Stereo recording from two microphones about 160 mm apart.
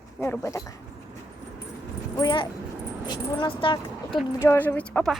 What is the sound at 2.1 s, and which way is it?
Speech, 25° left (ahead or behind).